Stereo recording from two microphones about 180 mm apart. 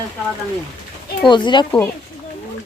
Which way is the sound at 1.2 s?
25° left (ahead or behind).